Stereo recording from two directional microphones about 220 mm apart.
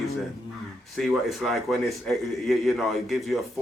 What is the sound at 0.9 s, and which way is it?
A man's voice, centre (ahead or behind).